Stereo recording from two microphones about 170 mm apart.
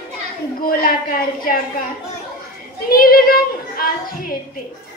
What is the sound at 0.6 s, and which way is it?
Speech, 60° left (ahead or behind).